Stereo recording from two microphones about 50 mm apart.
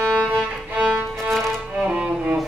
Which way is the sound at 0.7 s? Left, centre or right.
Right.